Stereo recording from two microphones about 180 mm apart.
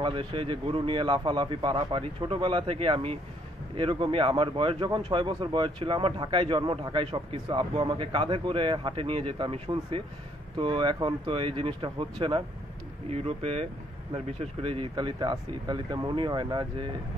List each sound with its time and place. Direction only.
0.0 s a man's voice: 25° right (ahead or behind)